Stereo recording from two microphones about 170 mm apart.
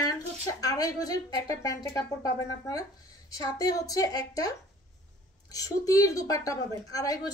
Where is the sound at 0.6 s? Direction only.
20° left (ahead or behind).